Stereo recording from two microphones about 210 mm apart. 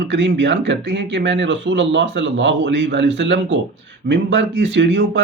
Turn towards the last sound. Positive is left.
turn(degrees=-55)  # may be behind; listen again after turning